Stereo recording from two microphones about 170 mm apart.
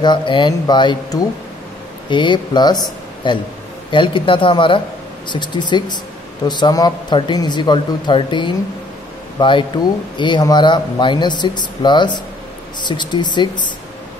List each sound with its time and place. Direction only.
0.0 s speech: 25° left (ahead or behind)